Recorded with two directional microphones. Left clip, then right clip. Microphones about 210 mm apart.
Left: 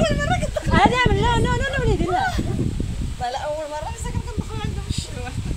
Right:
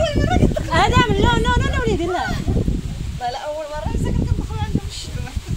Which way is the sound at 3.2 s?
15° left (ahead or behind).